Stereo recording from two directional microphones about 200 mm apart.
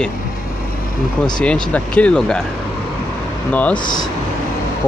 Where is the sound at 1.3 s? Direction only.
5° left (ahead or behind).